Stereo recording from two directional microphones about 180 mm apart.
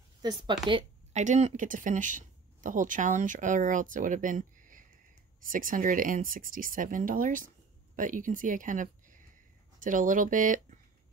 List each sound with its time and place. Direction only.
0.2 s speech: 25° right (ahead or behind)
1.1 s speech: 40° right (ahead or behind)